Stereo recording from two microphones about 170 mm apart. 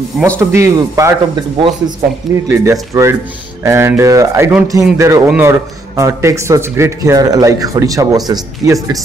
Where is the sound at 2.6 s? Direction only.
20° right (ahead or behind).